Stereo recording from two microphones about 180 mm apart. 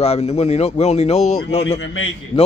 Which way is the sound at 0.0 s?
35° left (ahead or behind).